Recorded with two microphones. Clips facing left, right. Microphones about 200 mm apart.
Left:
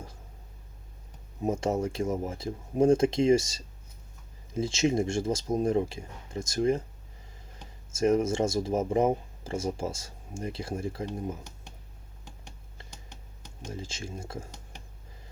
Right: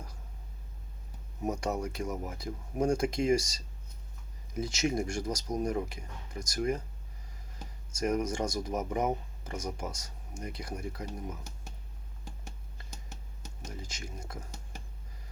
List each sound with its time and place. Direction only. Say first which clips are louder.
1.4 s speech: left 5 dB; 25° left (ahead or behind)
7.9 s speech: left 6 dB; 25° left (ahead or behind)
13.7 s speech: left 6 dB; 25° left (ahead or behind)